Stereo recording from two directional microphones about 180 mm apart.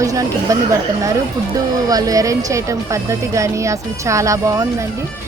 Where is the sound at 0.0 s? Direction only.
15° right (ahead or behind).